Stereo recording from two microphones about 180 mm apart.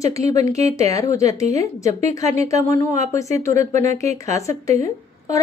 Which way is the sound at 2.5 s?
40° right (ahead or behind).